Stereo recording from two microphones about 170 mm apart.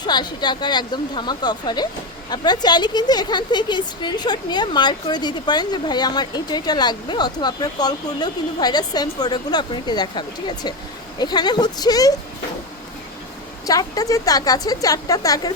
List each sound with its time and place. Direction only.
0.0 s a woman's voice: 25° left (ahead or behind)
13.7 s a woman's voice: 20° left (ahead or behind)